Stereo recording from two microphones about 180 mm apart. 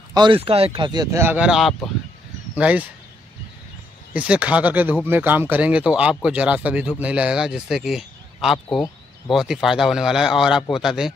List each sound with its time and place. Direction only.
0.1 s speech: 25° right (ahead or behind); by 2.9 s 10° right (ahead or behind)
4.1 s a man's voice: 5° right (ahead or behind)